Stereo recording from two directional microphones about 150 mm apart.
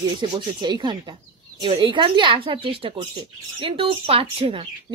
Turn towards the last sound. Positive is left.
turn(degrees=-40)  # may be behind; listen again after turning